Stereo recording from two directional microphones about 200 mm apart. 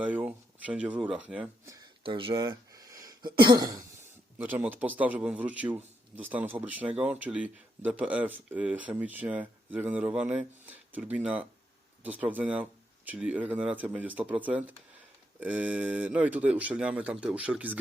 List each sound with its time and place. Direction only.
0.0 s speech: 5° right (ahead or behind)
2.0 s a sound: 25° right (ahead or behind)
3.4 s cough: 20° right (ahead or behind)
4.4 s speech: 10° right (ahead or behind)